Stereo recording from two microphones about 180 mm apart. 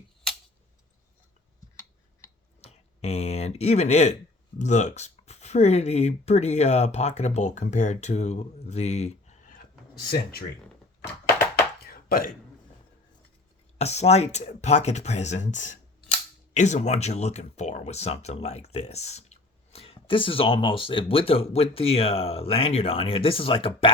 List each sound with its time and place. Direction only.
2.6 s speech: 35° left (ahead or behind)
11.0 s a sound: 10° left (ahead or behind)
12.0 s a man's voice: 55° left (ahead or behind)
13.7 s speech: 35° left (ahead or behind)